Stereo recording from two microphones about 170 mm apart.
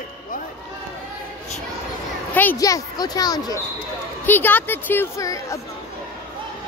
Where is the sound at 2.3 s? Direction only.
10° left (ahead or behind).